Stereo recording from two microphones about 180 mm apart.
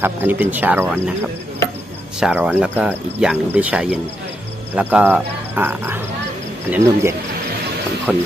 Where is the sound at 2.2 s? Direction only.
10° right (ahead or behind).